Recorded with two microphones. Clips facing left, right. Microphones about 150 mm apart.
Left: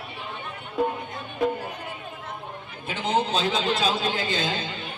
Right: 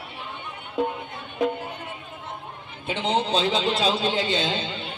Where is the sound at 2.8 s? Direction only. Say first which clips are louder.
Right 1 dB; 30° right (ahead or behind).